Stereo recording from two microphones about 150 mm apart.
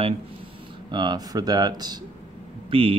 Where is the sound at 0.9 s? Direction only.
30° right (ahead or behind).